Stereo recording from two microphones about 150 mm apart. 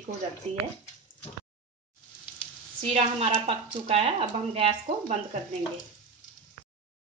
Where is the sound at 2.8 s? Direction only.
40° right (ahead or behind).